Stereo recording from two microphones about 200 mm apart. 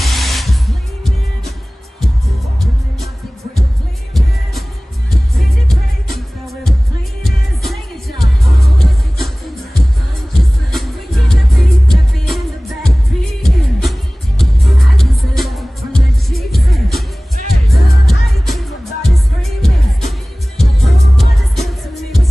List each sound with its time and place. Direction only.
0.0 s music: centre (ahead or behind)
5.1 s music: centre (ahead or behind)
10.3 s music: centre (ahead or behind)